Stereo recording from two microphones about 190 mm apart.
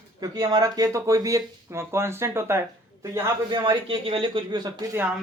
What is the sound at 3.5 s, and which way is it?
Speech, 25° right (ahead or behind).